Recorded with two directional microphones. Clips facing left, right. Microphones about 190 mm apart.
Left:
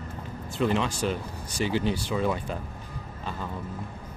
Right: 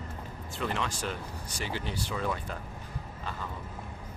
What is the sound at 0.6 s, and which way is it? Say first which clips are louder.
Speech: left 8 dB; 20° left (ahead or behind).